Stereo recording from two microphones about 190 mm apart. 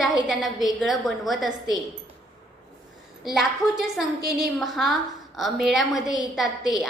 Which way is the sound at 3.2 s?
Centre (ahead or behind).